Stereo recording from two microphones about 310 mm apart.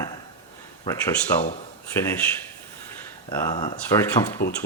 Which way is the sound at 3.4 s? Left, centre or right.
Centre.